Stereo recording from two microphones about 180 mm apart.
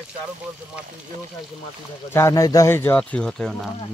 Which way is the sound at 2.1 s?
15° left (ahead or behind).